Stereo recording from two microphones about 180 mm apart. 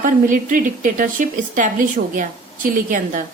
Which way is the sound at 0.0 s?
45° right (ahead or behind).